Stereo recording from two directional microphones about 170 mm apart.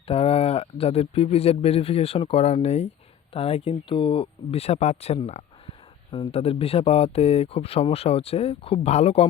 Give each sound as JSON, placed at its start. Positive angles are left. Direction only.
{"t": 0.1, "sound": "speech", "side_deg": 35}